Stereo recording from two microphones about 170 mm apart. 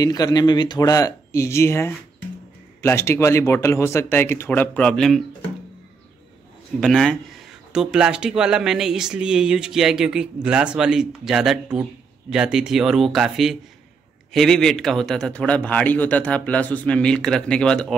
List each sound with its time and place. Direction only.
0.0 s speech: 20° left (ahead or behind); by 5.2 s 5° left (ahead or behind)
6.8 s speech: centre (ahead or behind)